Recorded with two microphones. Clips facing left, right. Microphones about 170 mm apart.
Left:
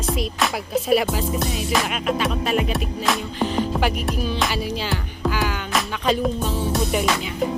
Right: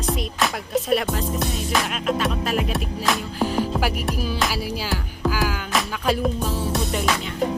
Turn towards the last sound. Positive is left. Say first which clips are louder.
# left 2 dB
turn(degrees=0)  # may be behind; listen again after turning